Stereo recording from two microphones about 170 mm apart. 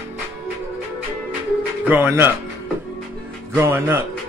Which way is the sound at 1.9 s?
15° right (ahead or behind).